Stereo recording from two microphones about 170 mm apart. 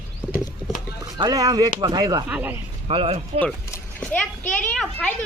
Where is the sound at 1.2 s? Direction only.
20° right (ahead or behind).